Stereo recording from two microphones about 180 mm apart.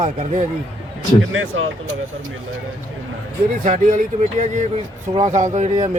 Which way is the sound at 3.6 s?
50° right (ahead or behind).